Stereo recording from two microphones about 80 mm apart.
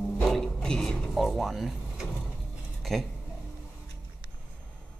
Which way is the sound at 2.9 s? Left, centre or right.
Centre.